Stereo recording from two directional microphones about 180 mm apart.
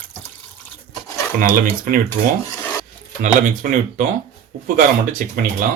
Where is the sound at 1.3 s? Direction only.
50° right (ahead or behind).